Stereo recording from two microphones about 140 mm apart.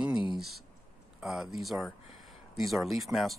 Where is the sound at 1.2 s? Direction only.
Centre (ahead or behind).